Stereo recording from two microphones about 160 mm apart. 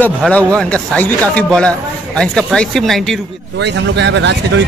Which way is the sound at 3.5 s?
90° right.